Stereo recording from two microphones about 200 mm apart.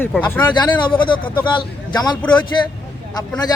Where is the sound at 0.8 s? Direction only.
25° left (ahead or behind).